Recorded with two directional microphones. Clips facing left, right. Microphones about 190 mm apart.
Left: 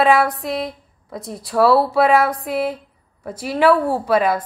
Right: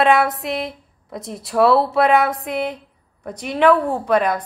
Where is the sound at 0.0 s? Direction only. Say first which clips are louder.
Even; centre (ahead or behind).